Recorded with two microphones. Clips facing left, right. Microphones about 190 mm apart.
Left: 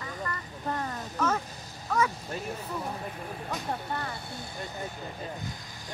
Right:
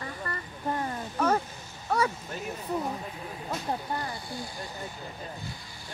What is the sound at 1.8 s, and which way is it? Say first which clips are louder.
Speech: right 1 dB; 35° right (ahead or behind).